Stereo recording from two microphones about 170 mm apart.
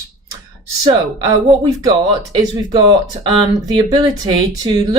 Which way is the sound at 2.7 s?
25° right (ahead or behind).